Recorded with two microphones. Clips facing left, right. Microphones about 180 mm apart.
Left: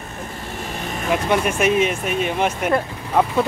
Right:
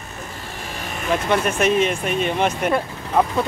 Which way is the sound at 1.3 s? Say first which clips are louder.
Even; 10° left (ahead or behind).